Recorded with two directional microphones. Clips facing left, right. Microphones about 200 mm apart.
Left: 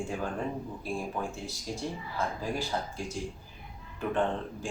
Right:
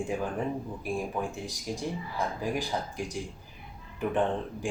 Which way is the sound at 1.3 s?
15° right (ahead or behind).